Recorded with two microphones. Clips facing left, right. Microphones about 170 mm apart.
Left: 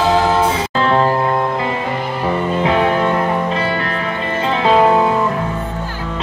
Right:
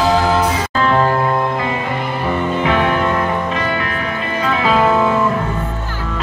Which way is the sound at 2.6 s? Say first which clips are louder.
Left 2 dB; 30° left (ahead or behind).